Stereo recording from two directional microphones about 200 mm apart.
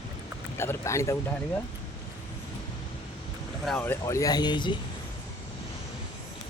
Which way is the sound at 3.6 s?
10° left (ahead or behind).